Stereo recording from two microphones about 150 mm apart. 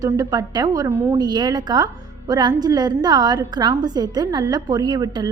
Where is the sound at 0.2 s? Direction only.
25° right (ahead or behind).